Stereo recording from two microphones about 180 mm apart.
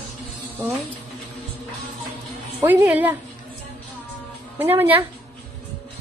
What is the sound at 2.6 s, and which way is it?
Speech, 10° right (ahead or behind).